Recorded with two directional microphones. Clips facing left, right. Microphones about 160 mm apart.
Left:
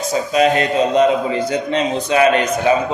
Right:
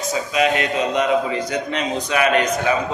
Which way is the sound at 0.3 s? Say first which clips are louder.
Left 5 dB; 35° left (ahead or behind).